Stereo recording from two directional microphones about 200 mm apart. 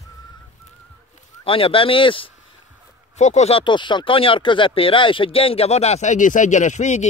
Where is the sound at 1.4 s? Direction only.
25° left (ahead or behind).